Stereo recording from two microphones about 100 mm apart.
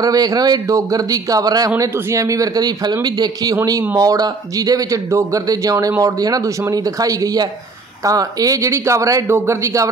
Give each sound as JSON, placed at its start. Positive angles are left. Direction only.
{"t": 0.0, "sound": "speech", "side_deg": -40}